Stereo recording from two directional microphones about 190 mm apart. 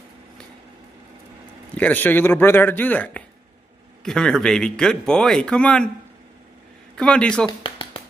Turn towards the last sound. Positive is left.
turn(degrees=30)  # may be behind; listen again after turning